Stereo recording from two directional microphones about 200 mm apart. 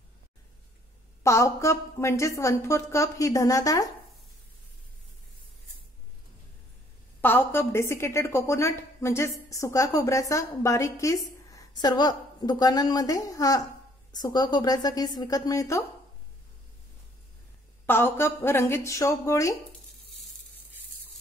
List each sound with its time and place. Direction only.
1.2 s a woman's voice: 15° left (ahead or behind)
7.2 s a woman's voice: 10° left (ahead or behind)
17.8 s a woman's voice: 10° left (ahead or behind)